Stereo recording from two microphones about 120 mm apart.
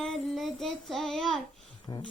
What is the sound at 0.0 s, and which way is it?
Child singing, 5° left (ahead or behind).